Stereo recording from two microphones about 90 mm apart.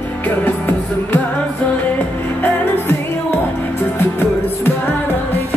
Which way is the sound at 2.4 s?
25° left (ahead or behind).